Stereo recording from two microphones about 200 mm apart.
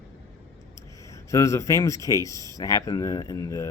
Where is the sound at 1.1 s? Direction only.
15° left (ahead or behind).